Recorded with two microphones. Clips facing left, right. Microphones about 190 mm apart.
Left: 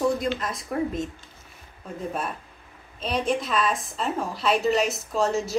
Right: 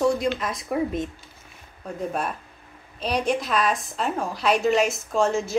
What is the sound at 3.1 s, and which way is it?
A woman's voice, centre (ahead or behind).